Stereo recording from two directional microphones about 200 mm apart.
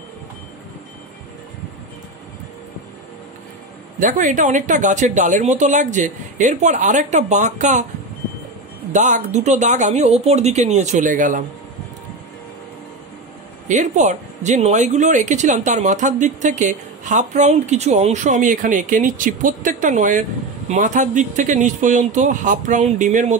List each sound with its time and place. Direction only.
4.0 s speech: 40° right (ahead or behind)
8.9 s speech: 35° right (ahead or behind)
13.7 s speech: 35° right (ahead or behind)